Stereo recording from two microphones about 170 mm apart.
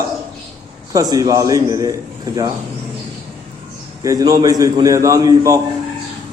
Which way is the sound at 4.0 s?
20° right (ahead or behind).